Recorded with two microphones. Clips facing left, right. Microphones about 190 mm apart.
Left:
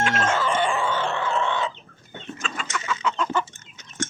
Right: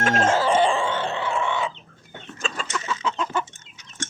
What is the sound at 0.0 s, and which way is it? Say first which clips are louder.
Chicken: right 3 dB; 40° right (ahead or behind).